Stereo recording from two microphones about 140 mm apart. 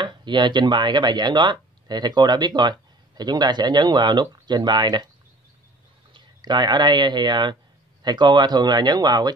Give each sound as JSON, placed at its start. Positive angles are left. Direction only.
{"t": 0.0, "sound": "speech", "side_deg": -35}
{"t": 6.1, "sound": "speech", "side_deg": -30}